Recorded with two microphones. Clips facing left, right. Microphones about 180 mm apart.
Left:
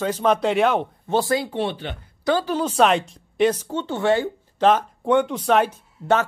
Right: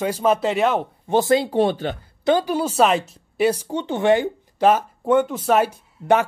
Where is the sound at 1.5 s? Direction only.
40° right (ahead or behind).